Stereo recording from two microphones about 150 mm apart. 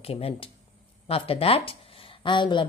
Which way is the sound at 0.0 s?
40° left (ahead or behind).